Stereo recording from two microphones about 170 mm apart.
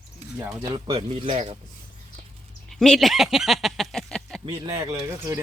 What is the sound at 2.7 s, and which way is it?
Speech, centre (ahead or behind).